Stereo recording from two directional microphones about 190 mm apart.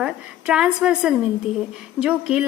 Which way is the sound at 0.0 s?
5° right (ahead or behind).